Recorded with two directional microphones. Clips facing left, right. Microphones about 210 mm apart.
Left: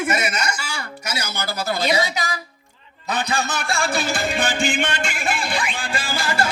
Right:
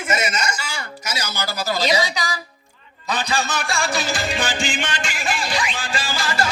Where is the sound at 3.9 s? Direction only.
55° left (ahead or behind).